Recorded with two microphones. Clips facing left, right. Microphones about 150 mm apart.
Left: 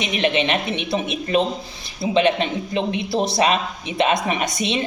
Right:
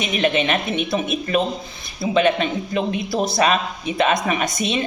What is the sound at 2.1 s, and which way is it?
A woman's voice, 25° left (ahead or behind).